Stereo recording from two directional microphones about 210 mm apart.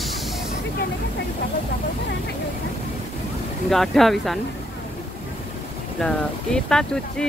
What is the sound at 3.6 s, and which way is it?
Speech, centre (ahead or behind).